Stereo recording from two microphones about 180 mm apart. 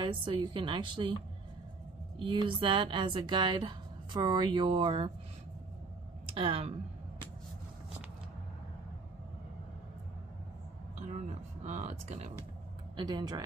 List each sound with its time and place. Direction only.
0.0 s speech: 25° right (ahead or behind)
2.1 s speech: 30° right (ahead or behind)
6.2 s speech: 30° right (ahead or behind)
11.2 s speech: 40° right (ahead or behind)
12.9 s speech: 25° right (ahead or behind)